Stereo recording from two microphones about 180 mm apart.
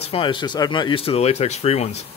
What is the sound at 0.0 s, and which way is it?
Speech, 30° left (ahead or behind).